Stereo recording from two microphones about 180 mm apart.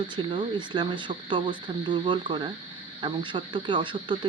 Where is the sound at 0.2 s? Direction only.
25° right (ahead or behind).